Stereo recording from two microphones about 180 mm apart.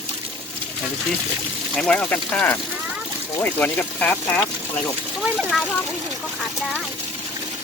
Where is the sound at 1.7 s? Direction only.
5° left (ahead or behind).